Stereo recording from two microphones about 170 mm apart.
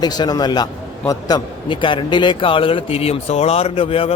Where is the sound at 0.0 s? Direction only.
25° left (ahead or behind).